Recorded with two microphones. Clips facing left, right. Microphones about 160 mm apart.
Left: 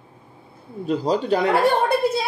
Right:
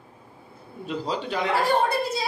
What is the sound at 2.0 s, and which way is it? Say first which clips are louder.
Speech: left 6 dB; 55° left (ahead or behind).